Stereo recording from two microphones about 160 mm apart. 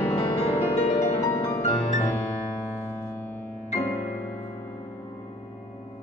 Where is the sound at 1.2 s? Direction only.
20° left (ahead or behind).